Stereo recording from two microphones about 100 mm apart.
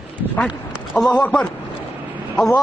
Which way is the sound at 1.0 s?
30° left (ahead or behind).